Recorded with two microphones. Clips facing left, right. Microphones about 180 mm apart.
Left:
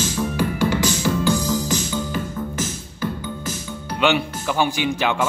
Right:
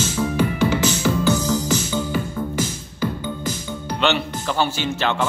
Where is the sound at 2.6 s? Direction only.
15° right (ahead or behind).